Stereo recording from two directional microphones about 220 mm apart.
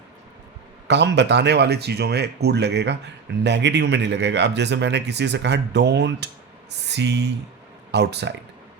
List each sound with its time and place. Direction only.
0.9 s speech: 50° right (ahead or behind)